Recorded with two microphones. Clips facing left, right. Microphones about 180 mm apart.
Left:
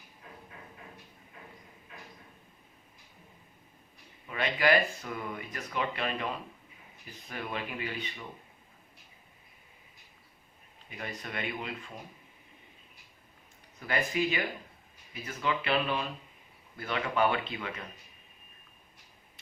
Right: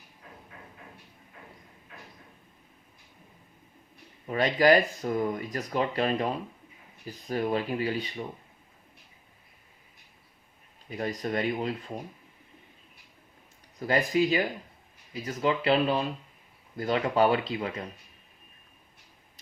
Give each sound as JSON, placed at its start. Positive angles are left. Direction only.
{"t": 4.3, "sound": "speech", "side_deg": -40}
{"t": 10.8, "sound": "speech", "side_deg": -35}
{"t": 13.7, "sound": "speech", "side_deg": -35}